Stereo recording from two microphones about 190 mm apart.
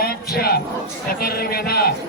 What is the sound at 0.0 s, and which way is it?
Crowd, 55° left (ahead or behind).